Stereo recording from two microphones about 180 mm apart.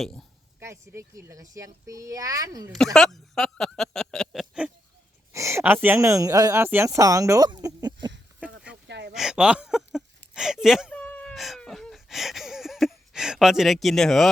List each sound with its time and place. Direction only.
0.0 s a woman's voice: centre (ahead or behind)
0.6 s speech: 15° right (ahead or behind)
2.7 s speech: 5° left (ahead or behind)
5.3 s speech: 15° right (ahead or behind)
8.7 s a sound: 70° right (ahead or behind)
9.1 s speech: 5° right (ahead or behind)
10.9 s a sound: 10° left (ahead or behind)